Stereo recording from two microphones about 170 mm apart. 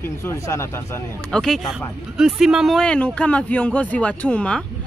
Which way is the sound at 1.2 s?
5° left (ahead or behind).